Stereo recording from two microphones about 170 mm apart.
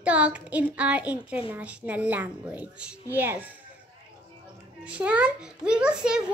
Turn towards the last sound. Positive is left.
turn(degrees=-5)  # may be behind; listen again after turning